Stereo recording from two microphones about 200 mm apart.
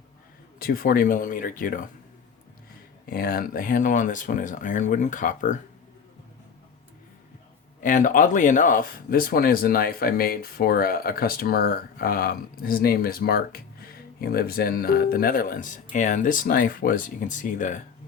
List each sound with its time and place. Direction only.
0.6 s speech: 45° left (ahead or behind)
3.1 s speech: 45° left (ahead or behind)
7.8 s speech: 40° left (ahead or behind)